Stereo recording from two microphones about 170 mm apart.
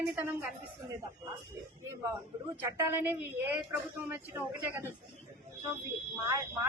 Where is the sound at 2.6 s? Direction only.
15° right (ahead or behind).